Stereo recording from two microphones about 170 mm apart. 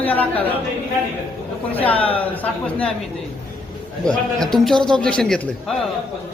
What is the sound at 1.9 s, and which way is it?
Speech, 35° left (ahead or behind).